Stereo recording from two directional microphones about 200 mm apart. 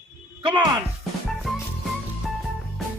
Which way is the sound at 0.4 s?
25° right (ahead or behind).